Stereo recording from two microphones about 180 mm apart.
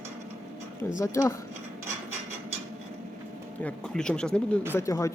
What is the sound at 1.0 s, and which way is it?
Speech, 15° left (ahead or behind).